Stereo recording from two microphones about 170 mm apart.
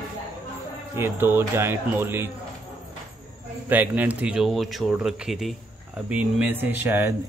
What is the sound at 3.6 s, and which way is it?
A man's voice, 10° right (ahead or behind).